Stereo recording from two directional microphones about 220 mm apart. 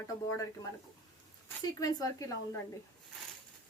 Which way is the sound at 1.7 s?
15° left (ahead or behind).